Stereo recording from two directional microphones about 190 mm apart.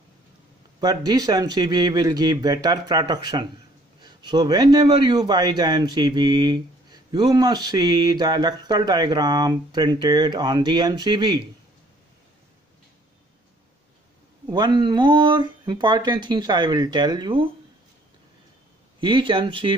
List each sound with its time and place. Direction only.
0.7 s a man's voice: 20° right (ahead or behind)
14.5 s a man's voice: 20° right (ahead or behind)
18.9 s a man's voice: 25° right (ahead or behind)